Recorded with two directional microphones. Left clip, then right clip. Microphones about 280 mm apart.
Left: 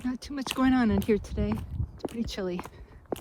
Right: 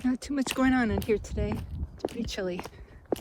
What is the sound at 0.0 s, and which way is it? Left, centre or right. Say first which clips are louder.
Speech: right 4 dB; centre.